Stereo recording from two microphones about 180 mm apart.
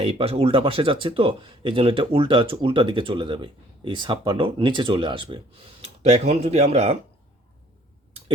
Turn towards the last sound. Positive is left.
turn(degrees=-35)  # may be behind; listen again after turning